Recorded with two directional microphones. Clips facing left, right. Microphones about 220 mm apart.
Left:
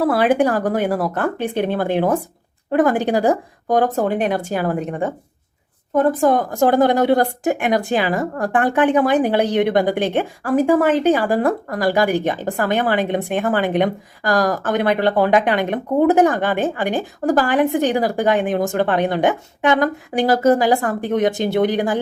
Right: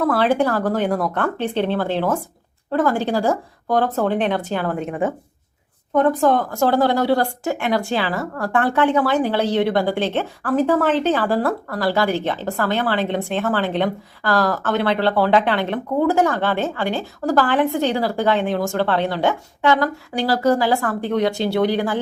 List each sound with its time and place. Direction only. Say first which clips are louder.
0.1 s speech: left 2 dB; 15° left (ahead or behind)
4.9 s speech: right 1 dB; 5° right (ahead or behind); by 22.0 s 15° left (ahead or behind)